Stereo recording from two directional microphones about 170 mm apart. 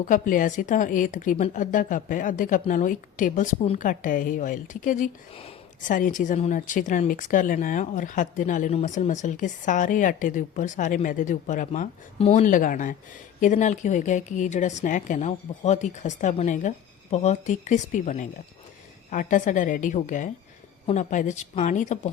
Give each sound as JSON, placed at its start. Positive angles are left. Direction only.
{"t": 0.0, "sound": "speech", "side_deg": 50}
{"t": 5.3, "sound": "speech", "side_deg": 35}
{"t": 5.9, "sound": "speech", "side_deg": 50}